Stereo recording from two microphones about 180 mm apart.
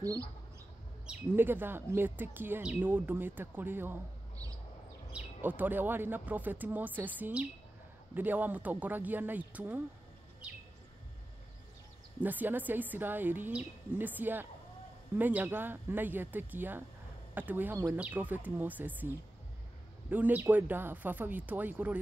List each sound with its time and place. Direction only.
0.0 s speech: 20° right (ahead or behind)
12.2 s speech: 10° right (ahead or behind)